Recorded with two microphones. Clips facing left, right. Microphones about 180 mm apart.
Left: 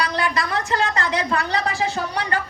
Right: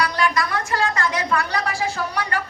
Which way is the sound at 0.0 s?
25° left (ahead or behind).